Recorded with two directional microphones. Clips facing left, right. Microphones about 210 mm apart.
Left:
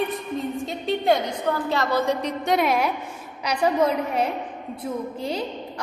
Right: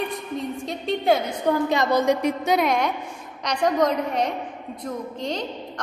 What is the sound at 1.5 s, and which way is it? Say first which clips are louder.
Speech: right 4 dB; 15° right (ahead or behind).